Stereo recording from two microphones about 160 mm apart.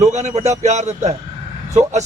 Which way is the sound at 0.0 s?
45° right (ahead or behind).